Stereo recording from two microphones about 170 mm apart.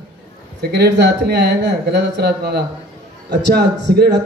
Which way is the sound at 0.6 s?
80° right.